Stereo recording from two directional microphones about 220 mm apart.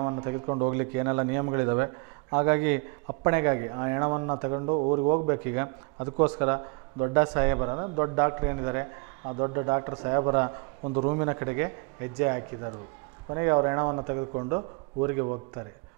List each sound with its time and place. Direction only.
0.0 s a man's voice: 20° right (ahead or behind)
10.8 s a man's voice: 30° right (ahead or behind)